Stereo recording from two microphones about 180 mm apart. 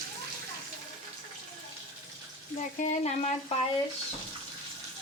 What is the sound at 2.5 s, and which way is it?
Frying, 40° left (ahead or behind).